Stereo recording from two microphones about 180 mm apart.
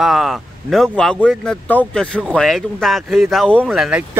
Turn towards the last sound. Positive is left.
turn(degrees=-5)  # may be behind; listen again after turning